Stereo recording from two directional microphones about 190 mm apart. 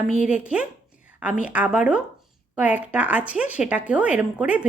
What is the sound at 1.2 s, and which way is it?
Speech, 5° right (ahead or behind).